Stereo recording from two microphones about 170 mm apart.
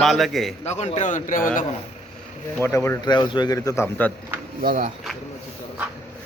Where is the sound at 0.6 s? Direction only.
40° left (ahead or behind).